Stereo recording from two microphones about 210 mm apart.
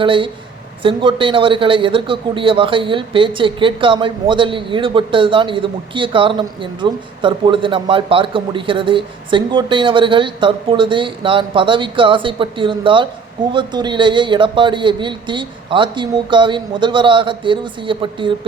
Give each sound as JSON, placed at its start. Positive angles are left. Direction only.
{"t": 0.0, "sound": "a man's voice", "side_deg": -25}